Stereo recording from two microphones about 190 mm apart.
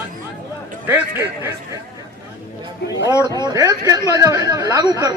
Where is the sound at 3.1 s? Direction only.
15° left (ahead or behind).